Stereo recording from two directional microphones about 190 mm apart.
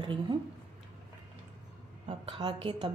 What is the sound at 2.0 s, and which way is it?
Speech, 25° right (ahead or behind).